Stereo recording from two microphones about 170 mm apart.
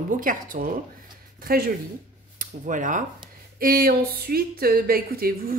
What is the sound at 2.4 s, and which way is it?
Speech, 50° right (ahead or behind).